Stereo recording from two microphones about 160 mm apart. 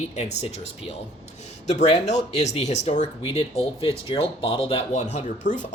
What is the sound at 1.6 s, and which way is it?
Speech, 45° left (ahead or behind).